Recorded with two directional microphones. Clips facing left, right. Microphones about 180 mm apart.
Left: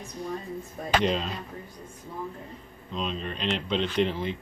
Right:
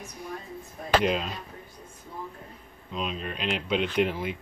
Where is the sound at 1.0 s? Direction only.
5° right (ahead or behind).